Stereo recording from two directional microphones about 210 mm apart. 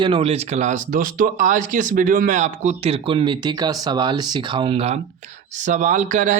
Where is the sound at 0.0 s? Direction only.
25° right (ahead or behind).